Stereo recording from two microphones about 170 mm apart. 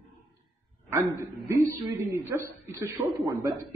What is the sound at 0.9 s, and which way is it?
A woman's voice, 15° right (ahead or behind).